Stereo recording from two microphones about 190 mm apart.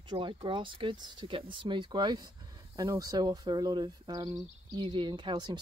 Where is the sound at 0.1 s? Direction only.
25° right (ahead or behind).